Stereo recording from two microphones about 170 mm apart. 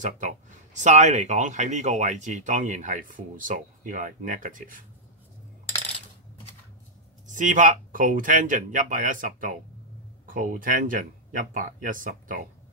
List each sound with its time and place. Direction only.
0.0 s speech: 45° right (ahead or behind)
7.2 s speech: 50° right (ahead or behind)